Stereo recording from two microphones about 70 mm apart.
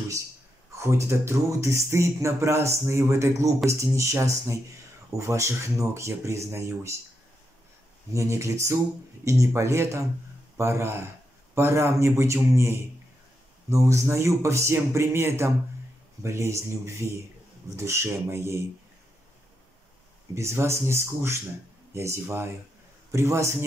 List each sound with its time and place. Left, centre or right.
0.7 s speech: right
8.1 s speech: right
20.3 s speech: right